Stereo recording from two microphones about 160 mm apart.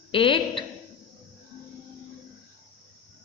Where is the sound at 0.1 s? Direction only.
30° left (ahead or behind).